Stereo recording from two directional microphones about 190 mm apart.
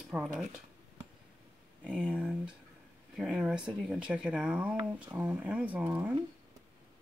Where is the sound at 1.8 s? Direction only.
5° right (ahead or behind).